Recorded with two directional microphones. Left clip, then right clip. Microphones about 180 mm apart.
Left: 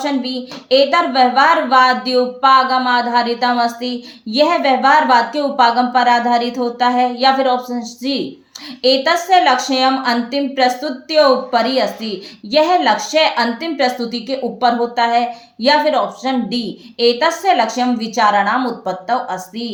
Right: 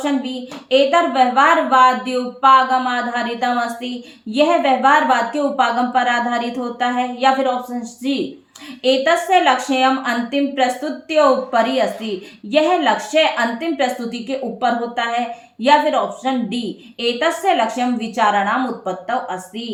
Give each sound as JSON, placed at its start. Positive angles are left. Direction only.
{"t": 0.0, "sound": "a woman's voice", "side_deg": 35}